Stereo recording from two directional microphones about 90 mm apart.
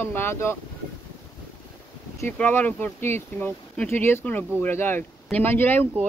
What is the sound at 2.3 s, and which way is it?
Speech, 15° left (ahead or behind).